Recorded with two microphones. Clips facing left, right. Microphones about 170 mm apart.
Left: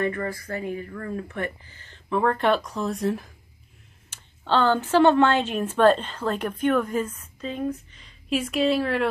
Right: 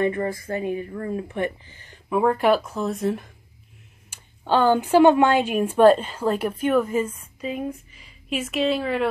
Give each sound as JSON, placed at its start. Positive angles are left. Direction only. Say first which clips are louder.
{"t": 0.0, "sound": "a woman's voice", "louder": "right 4 dB", "side_deg": -20}
{"t": 4.1, "sound": "a woman's voice", "louder": "right 2 dB", "side_deg": -10}